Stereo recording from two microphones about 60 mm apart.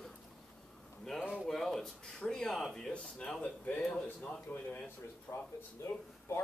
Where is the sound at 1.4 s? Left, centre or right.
Centre.